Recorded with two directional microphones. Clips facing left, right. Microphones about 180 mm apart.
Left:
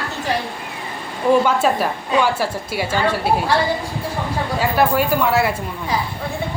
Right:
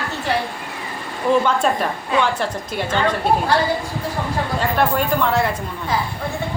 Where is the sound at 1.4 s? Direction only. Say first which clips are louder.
Left 1 dB; 5° left (ahead or behind).